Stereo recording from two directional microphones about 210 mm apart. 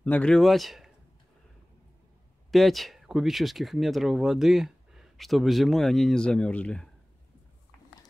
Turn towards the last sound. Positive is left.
turn(degrees=5)  # may be behind; listen again after turning